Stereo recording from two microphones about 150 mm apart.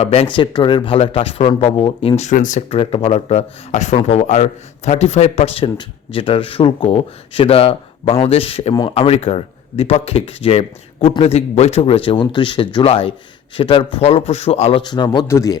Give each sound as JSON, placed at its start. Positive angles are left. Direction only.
{"t": 0.0, "sound": "a man's voice", "side_deg": 40}
{"t": 14.8, "sound": "a man's voice", "side_deg": 30}
{"t": 15.3, "sound": "a man's voice", "side_deg": 20}